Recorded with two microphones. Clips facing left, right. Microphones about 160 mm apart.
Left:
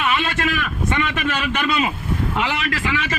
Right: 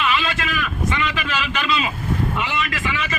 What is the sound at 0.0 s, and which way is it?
A man's voice, 50° left (ahead or behind).